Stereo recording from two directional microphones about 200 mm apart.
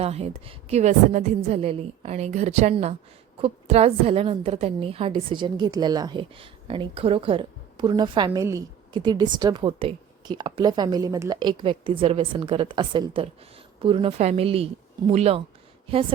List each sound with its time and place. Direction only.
0.0 s a woman's voice: 30° right (ahead or behind)